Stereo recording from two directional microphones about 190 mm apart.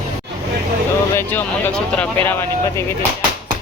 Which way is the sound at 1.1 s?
10° left (ahead or behind).